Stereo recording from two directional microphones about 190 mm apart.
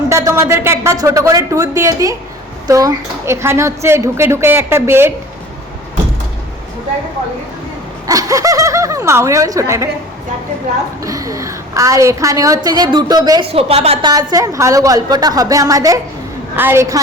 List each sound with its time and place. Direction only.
0.1 s a woman's voice: 15° right (ahead or behind)
8.0 s a woman's voice: 20° right (ahead or behind)
11.0 s a woman's voice: 15° right (ahead or behind)
13.5 s speech: 30° right (ahead or behind)
14.1 s a woman's voice: 20° right (ahead or behind)